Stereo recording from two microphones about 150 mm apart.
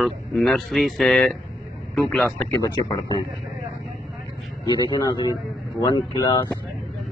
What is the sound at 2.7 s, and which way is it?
Speech, 35° left (ahead or behind).